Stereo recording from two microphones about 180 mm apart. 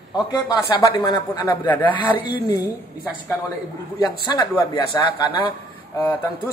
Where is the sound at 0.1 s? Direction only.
25° left (ahead or behind).